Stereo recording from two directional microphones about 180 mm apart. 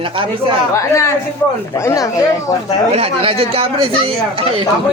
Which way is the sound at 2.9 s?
35° right (ahead or behind).